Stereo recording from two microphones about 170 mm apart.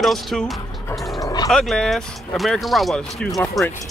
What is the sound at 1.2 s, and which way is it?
Dog, 20° left (ahead or behind).